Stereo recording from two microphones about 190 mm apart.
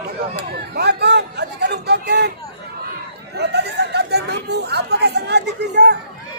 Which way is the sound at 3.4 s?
60° right (ahead or behind).